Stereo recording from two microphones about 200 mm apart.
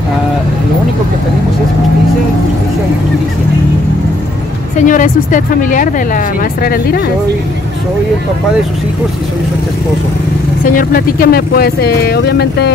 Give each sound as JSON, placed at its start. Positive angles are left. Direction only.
{"t": 4.7, "sound": "speech", "side_deg": 40}
{"t": 10.6, "sound": "speech", "side_deg": 45}